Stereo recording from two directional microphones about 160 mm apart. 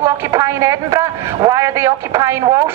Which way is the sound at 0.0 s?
20° right (ahead or behind).